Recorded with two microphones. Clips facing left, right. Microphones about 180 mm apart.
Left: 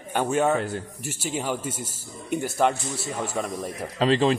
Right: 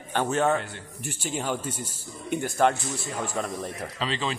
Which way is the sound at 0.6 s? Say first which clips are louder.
Left 6 dB; 40° left (ahead or behind).